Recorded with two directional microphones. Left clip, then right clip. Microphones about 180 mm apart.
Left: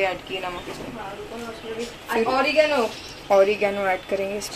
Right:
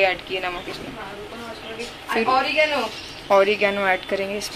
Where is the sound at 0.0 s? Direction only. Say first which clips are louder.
Right 4 dB; centre (ahead or behind).